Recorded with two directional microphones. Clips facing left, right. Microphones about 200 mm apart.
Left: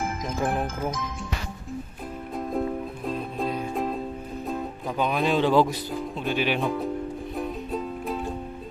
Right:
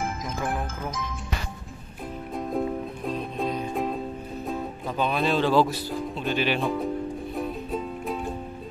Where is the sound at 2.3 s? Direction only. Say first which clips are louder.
Even; centre (ahead or behind).